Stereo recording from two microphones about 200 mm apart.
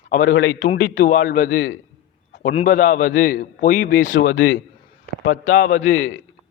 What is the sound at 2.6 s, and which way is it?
A man's voice, 40° left (ahead or behind).